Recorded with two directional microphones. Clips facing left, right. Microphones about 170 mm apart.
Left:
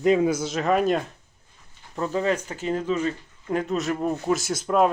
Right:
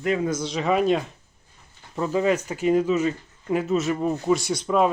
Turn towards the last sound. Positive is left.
turn(degrees=0)  # may be behind; listen again after turning